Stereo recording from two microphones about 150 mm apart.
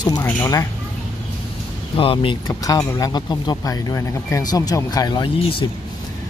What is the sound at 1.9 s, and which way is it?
Speech, 35° left (ahead or behind).